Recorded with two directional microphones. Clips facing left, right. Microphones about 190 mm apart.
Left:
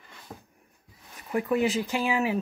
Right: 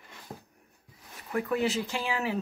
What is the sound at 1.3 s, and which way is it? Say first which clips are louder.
Speech: left 3 dB; 15° left (ahead or behind).